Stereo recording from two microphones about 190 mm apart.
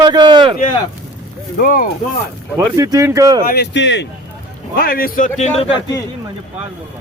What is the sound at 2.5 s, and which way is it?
Speech, 15° right (ahead or behind).